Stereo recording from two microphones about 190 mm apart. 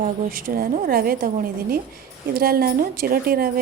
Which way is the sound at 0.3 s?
50° right (ahead or behind).